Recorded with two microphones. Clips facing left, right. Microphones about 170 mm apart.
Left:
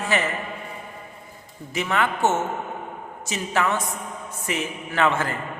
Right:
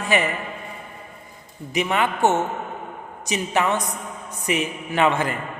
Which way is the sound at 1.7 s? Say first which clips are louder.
Right 2 dB; 15° right (ahead or behind).